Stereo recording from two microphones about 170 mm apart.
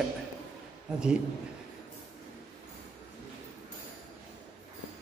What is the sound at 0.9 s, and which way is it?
Speech, 5° right (ahead or behind).